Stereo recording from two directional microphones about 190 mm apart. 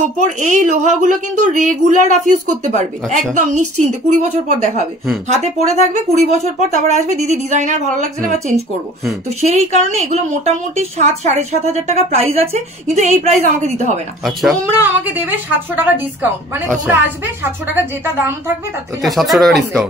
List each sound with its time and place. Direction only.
0.0 s a woman's voice: 40° right (ahead or behind)
3.3 s a woman's voice: 40° right (ahead or behind)
9.4 s a woman's voice: 35° right (ahead or behind)
14.5 s a woman's voice: 10° right (ahead or behind)
19.0 s speech: centre (ahead or behind)